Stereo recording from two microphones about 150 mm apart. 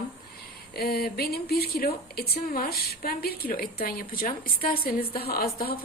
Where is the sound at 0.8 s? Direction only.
90° left.